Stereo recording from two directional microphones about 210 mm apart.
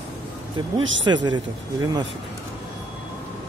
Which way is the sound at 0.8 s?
65° right (ahead or behind).